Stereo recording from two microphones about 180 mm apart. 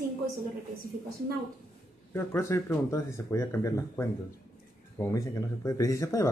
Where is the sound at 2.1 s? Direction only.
15° left (ahead or behind).